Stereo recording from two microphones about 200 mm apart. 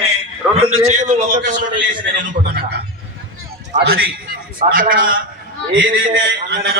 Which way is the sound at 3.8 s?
75° right (ahead or behind).